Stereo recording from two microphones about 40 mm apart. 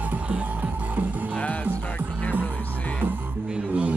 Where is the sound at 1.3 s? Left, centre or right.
Left.